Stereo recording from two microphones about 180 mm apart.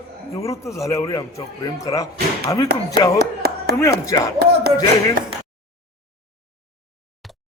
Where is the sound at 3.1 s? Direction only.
60° right (ahead or behind).